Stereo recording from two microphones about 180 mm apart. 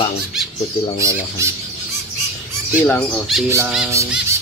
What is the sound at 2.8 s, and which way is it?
Speech, 5° left (ahead or behind).